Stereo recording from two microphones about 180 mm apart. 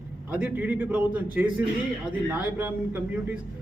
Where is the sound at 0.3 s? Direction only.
5° right (ahead or behind).